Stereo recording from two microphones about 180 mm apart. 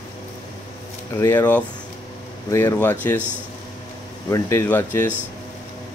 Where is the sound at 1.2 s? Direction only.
10° left (ahead or behind).